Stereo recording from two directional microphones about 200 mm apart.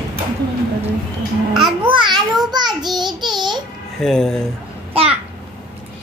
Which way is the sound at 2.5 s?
20° right (ahead or behind).